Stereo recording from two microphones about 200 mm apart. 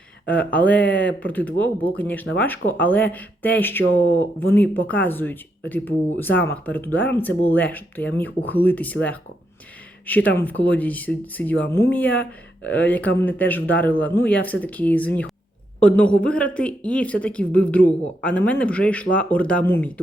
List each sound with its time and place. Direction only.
0.3 s speech: 5° left (ahead or behind)